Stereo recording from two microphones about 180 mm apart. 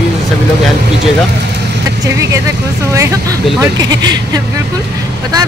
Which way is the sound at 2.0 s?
15° right (ahead or behind).